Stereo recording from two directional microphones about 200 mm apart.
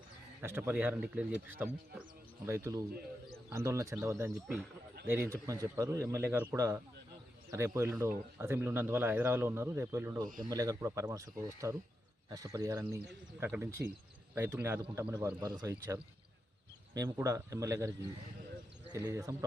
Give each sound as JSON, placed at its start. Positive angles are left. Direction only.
{"t": 0.4, "sound": "speech", "side_deg": -10}
{"t": 10.2, "sound": "speech", "side_deg": -40}
{"t": 10.5, "sound": "speech", "side_deg": -20}